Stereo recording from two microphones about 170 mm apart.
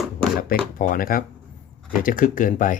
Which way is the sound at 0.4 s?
55° left (ahead or behind).